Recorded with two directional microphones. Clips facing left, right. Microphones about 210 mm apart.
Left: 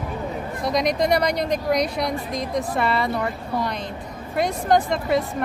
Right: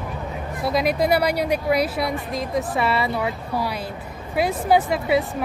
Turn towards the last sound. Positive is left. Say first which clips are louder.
# right 1 dB
turn(degrees=-5)  # may be behind; listen again after turning